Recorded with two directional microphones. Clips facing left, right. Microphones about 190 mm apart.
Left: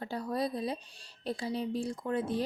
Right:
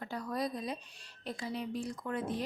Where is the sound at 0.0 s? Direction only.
30° left (ahead or behind).